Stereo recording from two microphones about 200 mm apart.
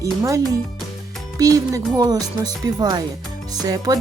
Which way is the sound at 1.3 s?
15° right (ahead or behind).